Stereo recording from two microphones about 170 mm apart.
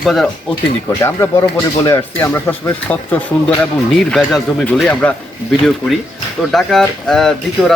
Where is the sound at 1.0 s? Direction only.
15° left (ahead or behind).